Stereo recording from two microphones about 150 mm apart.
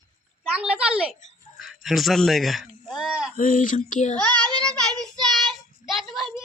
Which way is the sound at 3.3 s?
60° left (ahead or behind).